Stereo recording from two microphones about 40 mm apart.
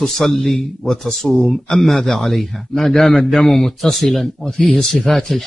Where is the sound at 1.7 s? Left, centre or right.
Centre.